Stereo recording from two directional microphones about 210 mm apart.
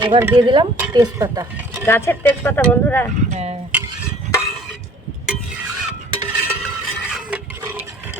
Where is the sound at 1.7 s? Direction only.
10° left (ahead or behind).